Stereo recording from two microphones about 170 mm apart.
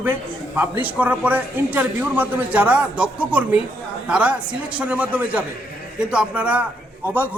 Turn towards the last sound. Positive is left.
turn(degrees=-10)  # may be behind; listen again after turning